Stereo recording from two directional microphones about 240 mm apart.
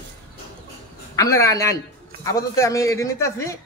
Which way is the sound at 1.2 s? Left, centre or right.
Centre.